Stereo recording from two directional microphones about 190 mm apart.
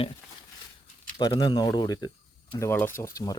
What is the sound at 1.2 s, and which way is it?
Speech, 20° left (ahead or behind).